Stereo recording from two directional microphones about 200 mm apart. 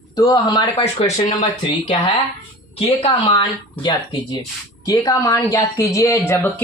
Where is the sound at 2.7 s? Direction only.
30° left (ahead or behind).